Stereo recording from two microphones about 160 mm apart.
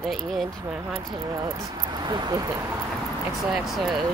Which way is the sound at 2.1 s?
25° right (ahead or behind).